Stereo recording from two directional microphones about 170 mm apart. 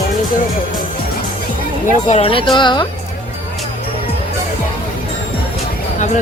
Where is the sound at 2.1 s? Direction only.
35° left (ahead or behind).